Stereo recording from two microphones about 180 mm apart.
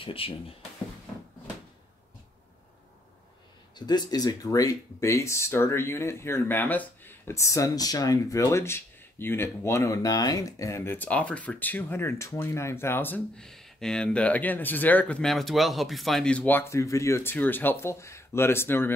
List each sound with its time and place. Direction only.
0.0 s speech: 30° left (ahead or behind)
3.7 s speech: 25° left (ahead or behind)